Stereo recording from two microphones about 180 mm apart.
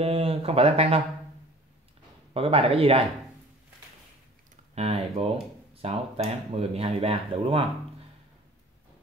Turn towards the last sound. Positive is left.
turn(degrees=-30)  # may be behind; listen again after turning